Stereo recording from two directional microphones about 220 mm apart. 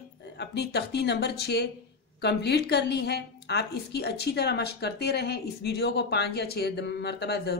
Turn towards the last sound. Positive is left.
turn(degrees=50)  # may be behind; listen again after turning